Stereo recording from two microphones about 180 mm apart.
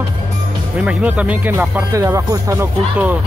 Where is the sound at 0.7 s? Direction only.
5° right (ahead or behind).